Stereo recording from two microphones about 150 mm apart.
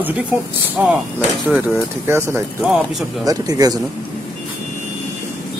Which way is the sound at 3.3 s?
25° right (ahead or behind).